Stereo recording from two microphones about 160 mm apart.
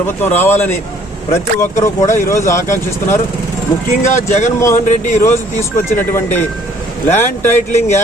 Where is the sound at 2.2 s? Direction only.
15° left (ahead or behind).